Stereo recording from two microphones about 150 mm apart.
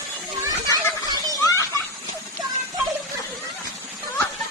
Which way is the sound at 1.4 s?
20° left (ahead or behind).